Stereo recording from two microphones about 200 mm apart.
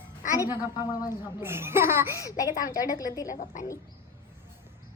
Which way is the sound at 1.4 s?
10° right (ahead or behind).